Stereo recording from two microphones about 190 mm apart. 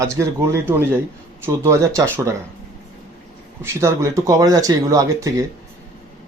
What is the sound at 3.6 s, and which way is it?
Speech, 15° right (ahead or behind).